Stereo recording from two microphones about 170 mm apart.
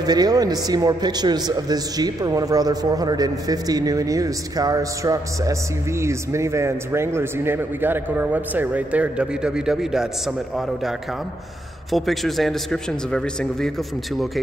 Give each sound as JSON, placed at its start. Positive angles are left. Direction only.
{"t": 0.0, "sound": "a man's voice", "side_deg": -25}